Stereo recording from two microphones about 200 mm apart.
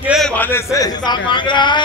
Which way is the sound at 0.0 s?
5° right (ahead or behind).